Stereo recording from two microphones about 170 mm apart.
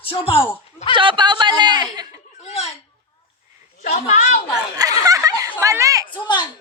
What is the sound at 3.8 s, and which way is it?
Speech, 45° left (ahead or behind).